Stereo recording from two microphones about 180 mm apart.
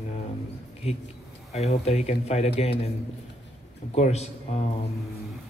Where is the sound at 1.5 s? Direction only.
35° left (ahead or behind).